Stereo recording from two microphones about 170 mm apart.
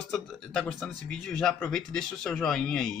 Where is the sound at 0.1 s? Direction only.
5° left (ahead or behind).